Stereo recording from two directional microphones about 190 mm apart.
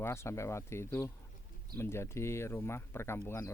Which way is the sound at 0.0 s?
15° left (ahead or behind).